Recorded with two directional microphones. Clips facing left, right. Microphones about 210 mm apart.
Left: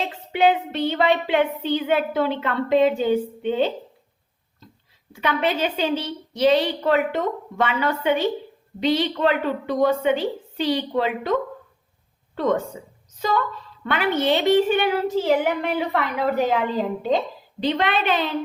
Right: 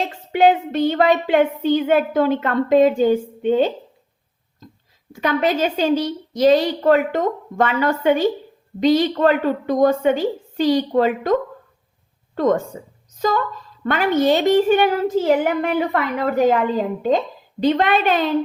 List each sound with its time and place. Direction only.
0.3 s a woman's voice: 45° right (ahead or behind)
5.1 s a woman's voice: 45° right (ahead or behind)